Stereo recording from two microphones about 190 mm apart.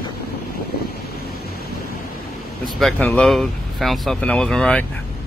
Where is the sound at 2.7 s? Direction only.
5° left (ahead or behind).